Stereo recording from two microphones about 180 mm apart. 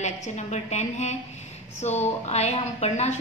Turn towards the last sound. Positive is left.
turn(degrees=35)  # may be behind; listen again after turning